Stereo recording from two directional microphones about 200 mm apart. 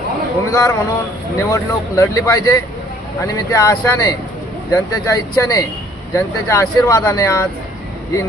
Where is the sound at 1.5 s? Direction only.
15° left (ahead or behind).